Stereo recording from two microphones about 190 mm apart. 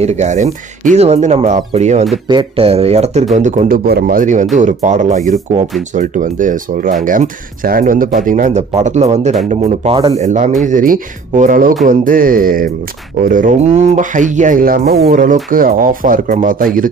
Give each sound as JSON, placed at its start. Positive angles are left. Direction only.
{"t": 0.0, "sound": "speech", "side_deg": -35}
{"t": 3.8, "sound": "speech", "side_deg": -50}
{"t": 10.2, "sound": "speech", "side_deg": -40}